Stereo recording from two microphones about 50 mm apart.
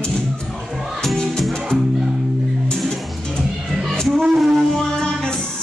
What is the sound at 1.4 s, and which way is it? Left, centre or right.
Music, centre.